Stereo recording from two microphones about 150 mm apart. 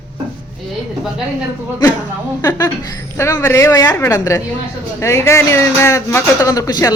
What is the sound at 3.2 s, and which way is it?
Speech, 20° left (ahead or behind).